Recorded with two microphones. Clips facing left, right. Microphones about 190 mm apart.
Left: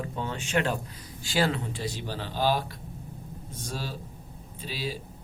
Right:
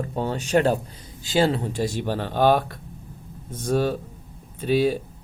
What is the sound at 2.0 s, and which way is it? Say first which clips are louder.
Speech: right 8 dB; 60° right (ahead or behind).